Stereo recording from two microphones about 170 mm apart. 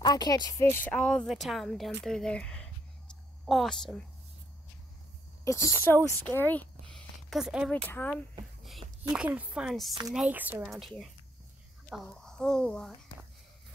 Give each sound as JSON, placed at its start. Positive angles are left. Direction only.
{"t": 0.0, "sound": "a woman's voice", "side_deg": 25}
{"t": 5.4, "sound": "speech", "side_deg": 15}
{"t": 7.7, "sound": "speech", "side_deg": 10}
{"t": 9.1, "sound": "a woman's voice", "side_deg": -5}